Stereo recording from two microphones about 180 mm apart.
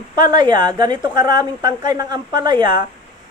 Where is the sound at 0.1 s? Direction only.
25° right (ahead or behind).